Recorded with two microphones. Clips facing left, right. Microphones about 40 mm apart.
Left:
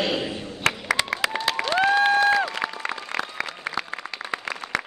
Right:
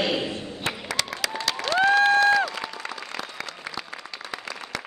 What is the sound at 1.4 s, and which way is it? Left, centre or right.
Applause, left.